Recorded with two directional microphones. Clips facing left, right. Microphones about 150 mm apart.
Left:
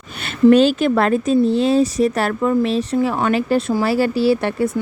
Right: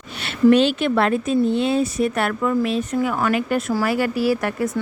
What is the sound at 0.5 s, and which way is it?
A woman's voice, 40° left (ahead or behind).